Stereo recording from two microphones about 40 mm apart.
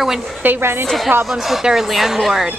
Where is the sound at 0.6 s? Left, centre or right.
Right.